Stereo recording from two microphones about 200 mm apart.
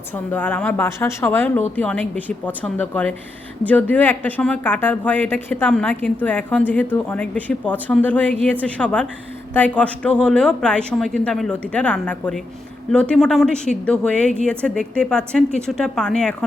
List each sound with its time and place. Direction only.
0.3 s a woman's voice: 10° left (ahead or behind)